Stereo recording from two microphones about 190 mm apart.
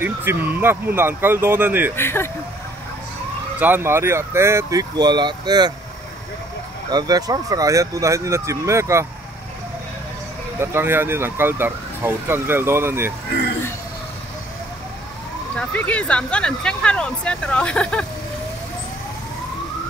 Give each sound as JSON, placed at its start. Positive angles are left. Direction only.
{"t": 0.0, "sound": "speech", "side_deg": -10}
{"t": 2.0, "sound": "speech", "side_deg": 10}
{"t": 3.5, "sound": "speech", "side_deg": -10}
{"t": 6.9, "sound": "speech", "side_deg": -20}
{"t": 10.6, "sound": "speech", "side_deg": -10}
{"t": 15.5, "sound": "speech", "side_deg": 10}